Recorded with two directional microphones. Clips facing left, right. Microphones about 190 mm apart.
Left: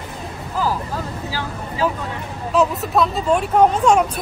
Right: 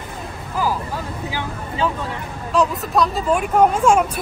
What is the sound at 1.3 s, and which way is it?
Speech, 20° right (ahead or behind).